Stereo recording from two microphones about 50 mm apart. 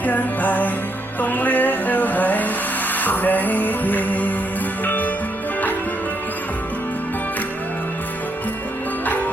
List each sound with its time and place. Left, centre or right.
0.0 s music: left